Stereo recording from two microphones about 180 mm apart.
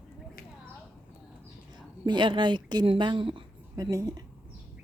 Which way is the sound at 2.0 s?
25° right (ahead or behind).